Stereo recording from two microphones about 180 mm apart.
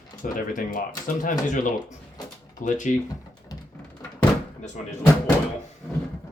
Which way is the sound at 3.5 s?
20° left (ahead or behind).